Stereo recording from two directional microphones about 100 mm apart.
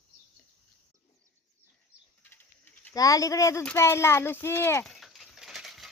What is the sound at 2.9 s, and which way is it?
A woman's voice, 35° left (ahead or behind).